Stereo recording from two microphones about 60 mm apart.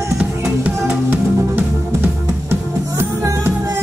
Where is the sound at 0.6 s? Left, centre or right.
Right.